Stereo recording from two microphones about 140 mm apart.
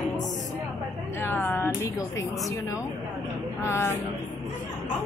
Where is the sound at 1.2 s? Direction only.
15° left (ahead or behind).